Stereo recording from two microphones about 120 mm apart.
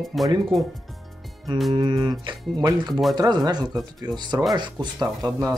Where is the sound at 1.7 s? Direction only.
35° right (ahead or behind).